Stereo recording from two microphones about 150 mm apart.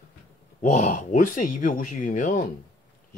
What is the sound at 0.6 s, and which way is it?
A man's voice, 50° left (ahead or behind).